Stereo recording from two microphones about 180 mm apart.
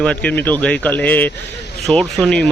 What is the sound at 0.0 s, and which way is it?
Speech, 5° left (ahead or behind).